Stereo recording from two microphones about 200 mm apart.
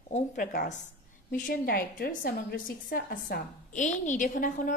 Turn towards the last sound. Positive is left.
turn(degrees=40)  # may be behind; listen again after turning